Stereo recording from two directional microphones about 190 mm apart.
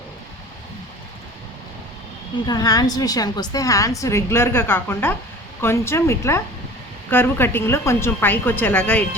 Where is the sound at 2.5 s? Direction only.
20° left (ahead or behind).